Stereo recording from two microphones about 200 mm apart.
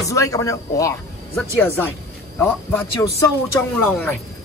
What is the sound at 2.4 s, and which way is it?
Speech, 10° left (ahead or behind).